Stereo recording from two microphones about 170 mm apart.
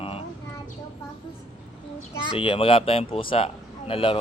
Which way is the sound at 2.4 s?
30° left (ahead or behind).